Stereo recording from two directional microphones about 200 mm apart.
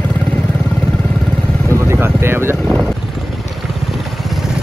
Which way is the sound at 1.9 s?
10° right (ahead or behind).